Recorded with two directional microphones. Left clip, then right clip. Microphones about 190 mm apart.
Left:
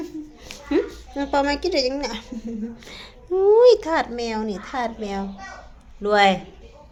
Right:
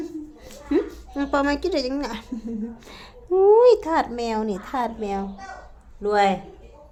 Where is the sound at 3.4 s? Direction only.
5° right (ahead or behind).